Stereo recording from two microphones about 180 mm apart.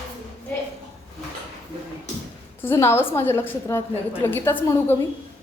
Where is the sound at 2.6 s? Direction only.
15° left (ahead or behind).